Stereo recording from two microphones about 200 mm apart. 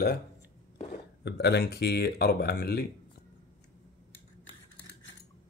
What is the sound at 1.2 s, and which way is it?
Speech, 55° left (ahead or behind).